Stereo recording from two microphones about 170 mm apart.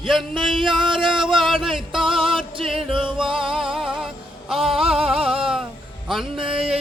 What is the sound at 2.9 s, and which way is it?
Music, 30° right (ahead or behind).